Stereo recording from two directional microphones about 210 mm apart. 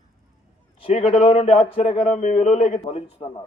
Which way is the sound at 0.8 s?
30° left (ahead or behind).